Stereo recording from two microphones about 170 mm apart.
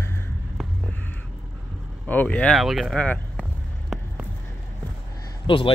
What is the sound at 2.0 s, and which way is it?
Speech, 10° left (ahead or behind).